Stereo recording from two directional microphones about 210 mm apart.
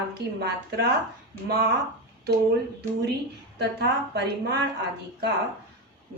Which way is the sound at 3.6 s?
50° right (ahead or behind).